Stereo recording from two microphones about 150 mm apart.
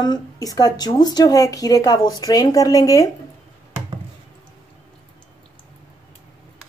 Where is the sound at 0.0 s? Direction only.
25° left (ahead or behind).